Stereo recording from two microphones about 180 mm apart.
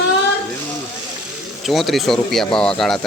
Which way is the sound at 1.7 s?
Centre (ahead or behind).